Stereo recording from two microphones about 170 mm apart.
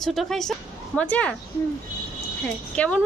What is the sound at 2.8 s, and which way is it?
Speech, 10° left (ahead or behind).